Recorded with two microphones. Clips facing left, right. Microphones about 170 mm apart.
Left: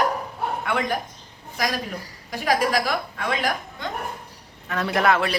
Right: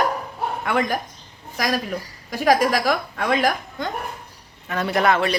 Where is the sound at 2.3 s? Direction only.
45° right (ahead or behind).